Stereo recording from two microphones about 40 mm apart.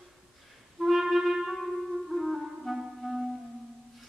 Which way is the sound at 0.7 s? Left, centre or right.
Centre.